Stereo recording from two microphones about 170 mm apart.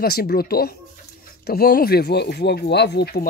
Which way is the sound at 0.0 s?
65° left (ahead or behind).